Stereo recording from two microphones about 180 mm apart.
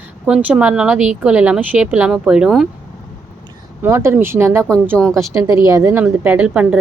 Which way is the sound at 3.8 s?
15° right (ahead or behind).